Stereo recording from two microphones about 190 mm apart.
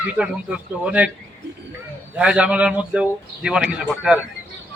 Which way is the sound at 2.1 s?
5° right (ahead or behind).